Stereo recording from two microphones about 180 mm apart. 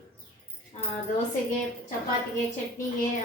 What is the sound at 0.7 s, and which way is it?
Tambourine, 35° left (ahead or behind).